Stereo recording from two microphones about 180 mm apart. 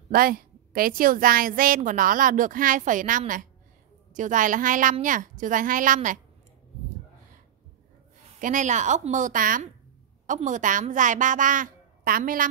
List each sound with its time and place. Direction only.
0.1 s a woman's voice: 55° right (ahead or behind)
8.4 s a woman's voice: 45° right (ahead or behind)